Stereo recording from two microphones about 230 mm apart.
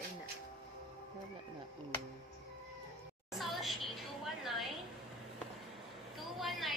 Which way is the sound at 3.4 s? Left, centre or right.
Centre.